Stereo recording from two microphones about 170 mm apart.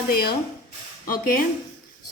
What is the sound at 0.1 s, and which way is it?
Speech, 65° left (ahead or behind).